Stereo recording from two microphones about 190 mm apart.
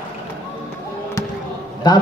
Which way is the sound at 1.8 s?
20° left (ahead or behind).